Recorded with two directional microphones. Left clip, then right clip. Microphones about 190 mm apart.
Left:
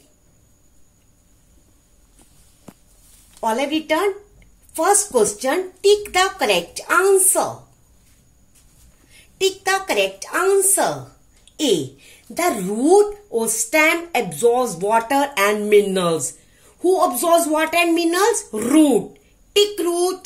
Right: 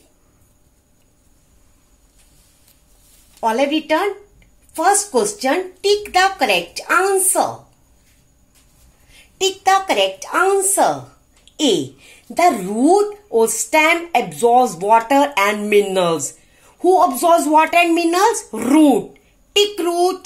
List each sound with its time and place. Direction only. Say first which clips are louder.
3.3 s speech: right 4 dB; 15° right (ahead or behind)
9.4 s a woman's voice: right 4 dB; 10° right (ahead or behind)